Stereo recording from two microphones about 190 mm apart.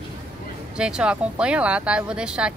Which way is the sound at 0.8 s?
5° right (ahead or behind).